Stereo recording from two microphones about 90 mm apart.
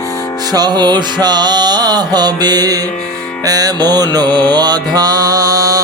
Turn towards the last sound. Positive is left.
turn(degrees=-40)  # may be behind; listen again after turning